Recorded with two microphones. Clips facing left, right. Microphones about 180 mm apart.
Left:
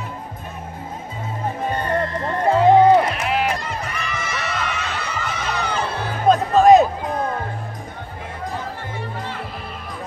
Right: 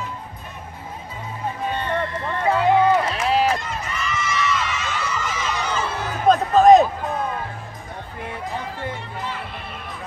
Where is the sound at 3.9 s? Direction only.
60° left (ahead or behind).